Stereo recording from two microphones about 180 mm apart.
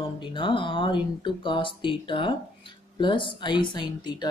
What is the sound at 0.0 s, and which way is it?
Speech, 25° left (ahead or behind).